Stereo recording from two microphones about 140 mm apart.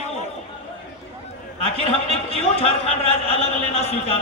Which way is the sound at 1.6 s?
45° left (ahead or behind).